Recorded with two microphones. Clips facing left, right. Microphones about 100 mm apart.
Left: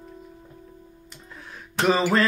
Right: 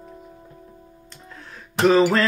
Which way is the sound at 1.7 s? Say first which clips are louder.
Right 5 dB; 5° left (ahead or behind).